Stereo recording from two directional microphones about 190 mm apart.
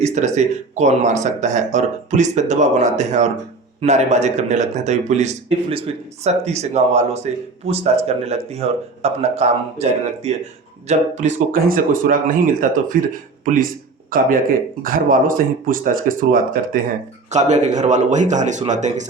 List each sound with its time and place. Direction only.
0.0 s a man's voice: 40° right (ahead or behind)